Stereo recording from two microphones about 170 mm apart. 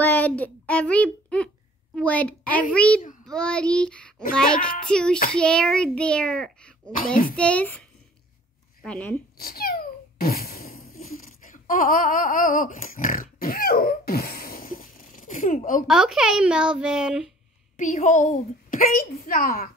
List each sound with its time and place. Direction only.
0.0 s a child's voice: 10° left (ahead or behind)
8.8 s a child's voice: 10° left (ahead or behind)
9.4 s babbling: 60° left (ahead or behind)
11.1 s a sound: 50° left (ahead or behind)
15.9 s a child's voice: 5° right (ahead or behind)
17.7 s a woman's voice: 45° left (ahead or behind)